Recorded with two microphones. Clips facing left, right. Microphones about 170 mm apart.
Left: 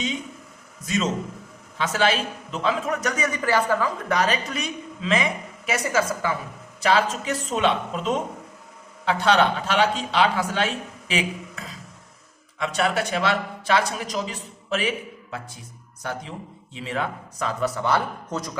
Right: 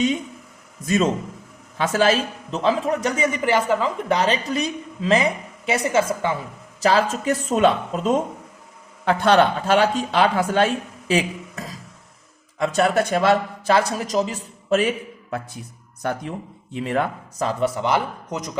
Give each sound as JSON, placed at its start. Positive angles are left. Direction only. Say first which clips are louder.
{"t": 0.9, "sound": "a man's voice", "louder": "right 5 dB", "side_deg": -50}
{"t": 6.8, "sound": "speech", "louder": "right 3 dB", "side_deg": -45}
{"t": 12.5, "sound": "speech", "louder": "right 5 dB", "side_deg": -40}
{"t": 16.7, "sound": "speech", "louder": "right 6 dB", "side_deg": -55}
{"t": 17.4, "sound": "a man's voice", "louder": "right 3 dB", "side_deg": -20}